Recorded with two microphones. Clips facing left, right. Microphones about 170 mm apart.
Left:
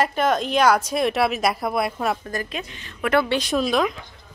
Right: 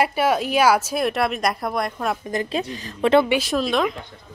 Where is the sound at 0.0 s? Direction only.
10° right (ahead or behind).